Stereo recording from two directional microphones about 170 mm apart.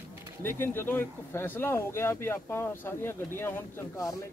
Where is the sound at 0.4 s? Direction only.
15° left (ahead or behind).